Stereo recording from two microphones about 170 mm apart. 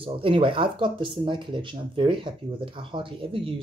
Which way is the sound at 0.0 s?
30° right (ahead or behind).